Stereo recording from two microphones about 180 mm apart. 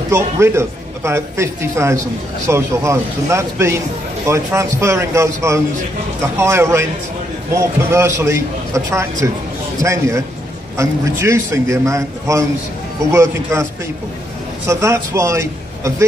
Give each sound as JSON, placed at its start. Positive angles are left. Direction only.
{"t": 0.1, "sound": "a man's voice", "side_deg": -15}
{"t": 14.7, "sound": "a man's voice", "side_deg": -15}